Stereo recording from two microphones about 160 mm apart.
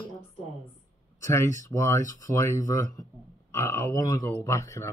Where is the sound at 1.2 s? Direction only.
15° left (ahead or behind).